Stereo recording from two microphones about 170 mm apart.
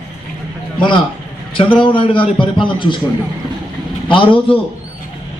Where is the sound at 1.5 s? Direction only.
30° left (ahead or behind).